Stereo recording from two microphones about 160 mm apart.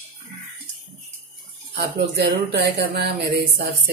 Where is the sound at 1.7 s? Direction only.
85° right.